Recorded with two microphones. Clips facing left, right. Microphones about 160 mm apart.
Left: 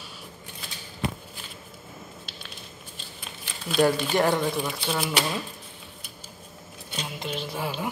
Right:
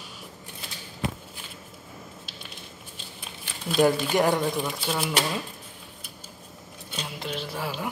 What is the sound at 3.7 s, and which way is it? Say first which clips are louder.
Speech: right 1 dB; 10° right (ahead or behind).